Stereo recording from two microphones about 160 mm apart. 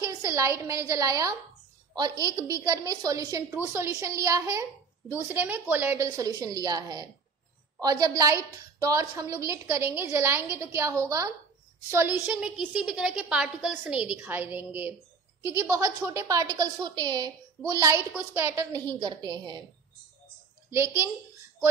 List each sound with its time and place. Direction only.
0.0 s a woman's voice: 20° right (ahead or behind)
18.9 s a woman's voice: 25° right (ahead or behind)
20.7 s a woman's voice: 15° right (ahead or behind)